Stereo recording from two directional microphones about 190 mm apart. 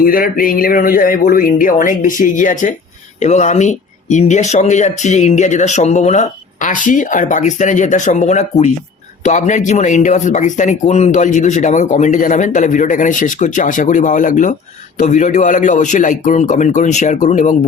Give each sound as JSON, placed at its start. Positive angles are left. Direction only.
{"t": 0.0, "sound": "speech", "side_deg": 45}